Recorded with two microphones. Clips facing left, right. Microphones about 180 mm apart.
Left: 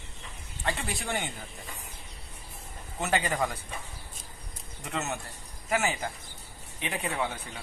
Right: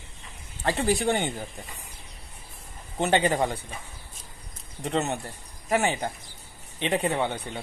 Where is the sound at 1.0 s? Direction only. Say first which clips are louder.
Right 8 dB; 35° right (ahead or behind).